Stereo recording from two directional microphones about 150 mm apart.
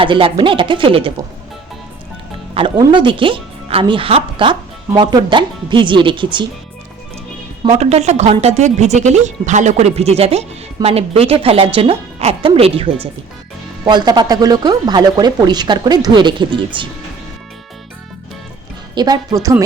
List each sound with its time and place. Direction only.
0.0 s a woman's voice: 35° right (ahead or behind)
2.6 s a woman's voice: 30° right (ahead or behind)
7.8 s a woman's voice: 45° right (ahead or behind)
13.8 s speech: 30° right (ahead or behind)
18.9 s speech: 25° right (ahead or behind)